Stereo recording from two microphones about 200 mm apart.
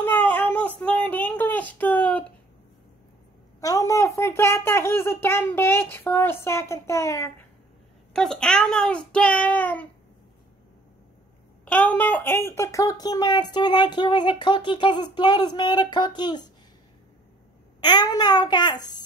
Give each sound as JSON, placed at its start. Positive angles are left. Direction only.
{"t": 0.0, "sound": "a sound", "side_deg": 10}
{"t": 3.6, "sound": "speech", "side_deg": 15}
{"t": 8.1, "sound": "a child's voice", "side_deg": 5}
{"t": 11.6, "sound": "speech", "side_deg": 5}
{"t": 17.7, "sound": "speech", "side_deg": 20}